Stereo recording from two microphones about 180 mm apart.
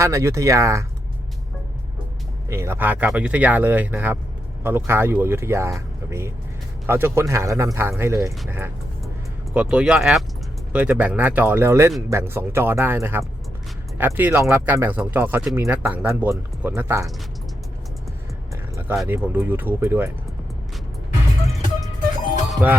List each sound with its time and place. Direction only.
0.0 s speech: 15° right (ahead or behind)
2.5 s speech: 15° right (ahead or behind)
18.5 s speech: 10° right (ahead or behind)
22.6 s speech: 10° right (ahead or behind)